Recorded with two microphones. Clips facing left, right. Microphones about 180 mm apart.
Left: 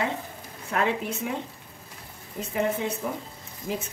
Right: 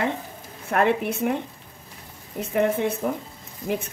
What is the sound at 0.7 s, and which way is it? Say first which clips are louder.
Speech: right 5 dB; 60° right (ahead or behind).